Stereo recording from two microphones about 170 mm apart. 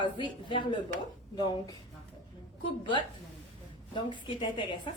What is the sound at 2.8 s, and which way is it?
A woman's voice, 30° left (ahead or behind).